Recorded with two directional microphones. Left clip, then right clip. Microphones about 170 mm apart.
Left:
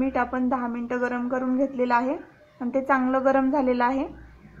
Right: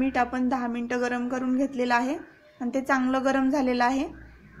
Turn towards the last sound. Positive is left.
turn(degrees=-20)  # may be behind; listen again after turning